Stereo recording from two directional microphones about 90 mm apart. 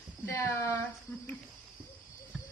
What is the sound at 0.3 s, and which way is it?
Speech, 35° left (ahead or behind).